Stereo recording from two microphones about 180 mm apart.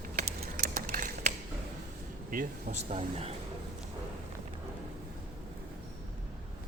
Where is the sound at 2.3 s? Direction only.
45° right (ahead or behind).